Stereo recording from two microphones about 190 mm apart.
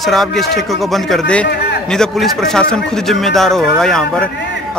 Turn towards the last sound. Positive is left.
turn(degrees=5)  # may be behind; listen again after turning